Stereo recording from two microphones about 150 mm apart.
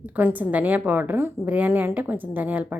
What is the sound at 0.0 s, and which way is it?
A woman's voice, 10° right (ahead or behind).